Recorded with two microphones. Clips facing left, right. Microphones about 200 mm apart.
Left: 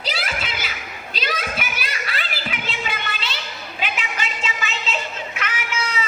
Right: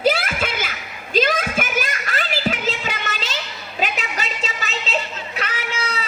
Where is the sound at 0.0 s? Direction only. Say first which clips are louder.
Right 9 dB; 50° right (ahead or behind).